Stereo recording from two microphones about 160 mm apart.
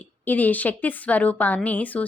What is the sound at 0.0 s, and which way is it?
Speech, 10° left (ahead or behind).